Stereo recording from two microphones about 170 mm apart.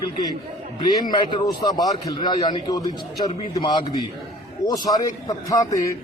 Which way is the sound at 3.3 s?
35° left (ahead or behind).